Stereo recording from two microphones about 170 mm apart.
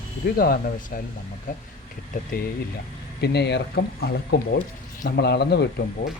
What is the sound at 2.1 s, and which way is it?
Speech, 50° left (ahead or behind).